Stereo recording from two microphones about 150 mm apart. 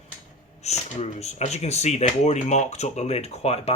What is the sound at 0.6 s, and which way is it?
Speech, 45° left (ahead or behind).